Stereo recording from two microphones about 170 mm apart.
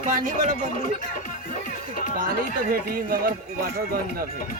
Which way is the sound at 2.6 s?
55° right (ahead or behind).